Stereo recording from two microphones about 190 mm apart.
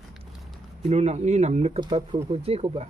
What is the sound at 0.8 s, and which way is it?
Speech, 35° right (ahead or behind).